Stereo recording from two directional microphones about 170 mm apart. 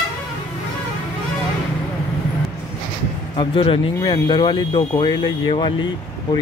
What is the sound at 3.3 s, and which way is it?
Speech, 30° left (ahead or behind).